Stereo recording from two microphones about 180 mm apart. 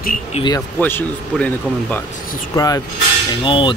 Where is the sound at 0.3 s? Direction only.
25° left (ahead or behind).